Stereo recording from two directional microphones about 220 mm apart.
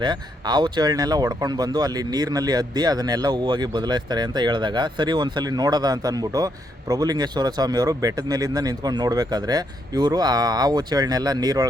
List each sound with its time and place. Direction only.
0.0 s speech: 20° right (ahead or behind)